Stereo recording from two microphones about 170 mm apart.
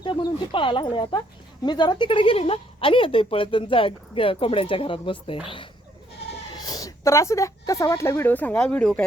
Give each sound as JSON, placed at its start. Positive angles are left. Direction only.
{"t": 0.0, "sound": "a woman's voice", "side_deg": 30}
{"t": 6.6, "sound": "speech", "side_deg": 20}